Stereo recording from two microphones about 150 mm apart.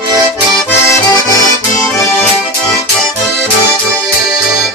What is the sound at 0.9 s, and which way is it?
Accordion, 25° left (ahead or behind).